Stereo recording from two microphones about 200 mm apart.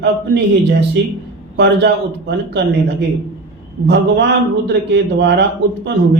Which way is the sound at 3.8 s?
60° right (ahead or behind).